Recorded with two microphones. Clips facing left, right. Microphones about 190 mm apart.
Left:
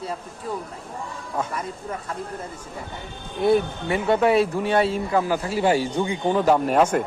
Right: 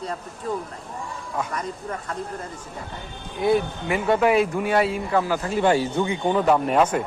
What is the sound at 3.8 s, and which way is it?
Speech, 30° left (ahead or behind).